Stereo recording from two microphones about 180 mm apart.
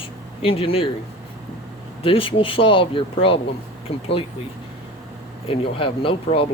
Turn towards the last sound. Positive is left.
turn(degrees=30)  # may be behind; listen again after turning